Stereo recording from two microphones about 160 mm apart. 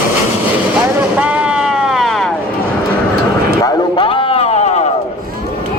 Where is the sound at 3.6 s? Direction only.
25° left (ahead or behind); by 4.9 s 45° left (ahead or behind).